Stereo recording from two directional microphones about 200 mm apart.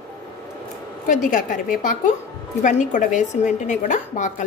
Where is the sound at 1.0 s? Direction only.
40° left (ahead or behind).